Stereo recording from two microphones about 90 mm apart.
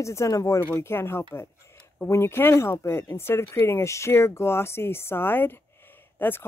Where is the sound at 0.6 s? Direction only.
25° left (ahead or behind).